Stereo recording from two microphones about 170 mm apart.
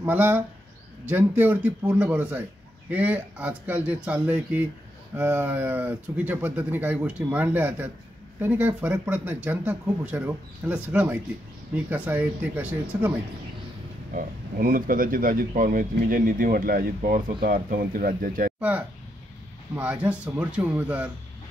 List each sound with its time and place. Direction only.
0.0 s speech: 10° right (ahead or behind)
14.1 s speech: 55° right (ahead or behind)
18.6 s speech: 10° right (ahead or behind)